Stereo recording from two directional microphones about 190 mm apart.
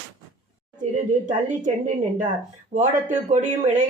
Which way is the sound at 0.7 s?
40° right (ahead or behind).